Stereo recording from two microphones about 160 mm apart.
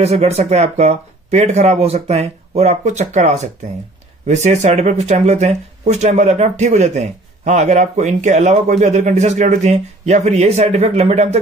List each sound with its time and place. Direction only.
0.0 s speech: 40° right (ahead or behind)